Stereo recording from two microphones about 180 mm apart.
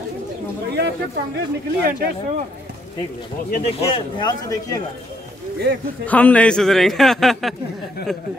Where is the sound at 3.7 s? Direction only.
35° left (ahead or behind).